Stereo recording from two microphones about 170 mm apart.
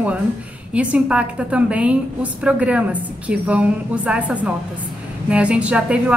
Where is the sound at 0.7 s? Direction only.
5° right (ahead or behind).